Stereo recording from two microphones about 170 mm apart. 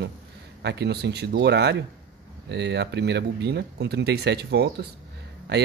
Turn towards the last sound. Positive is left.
turn(degrees=-80)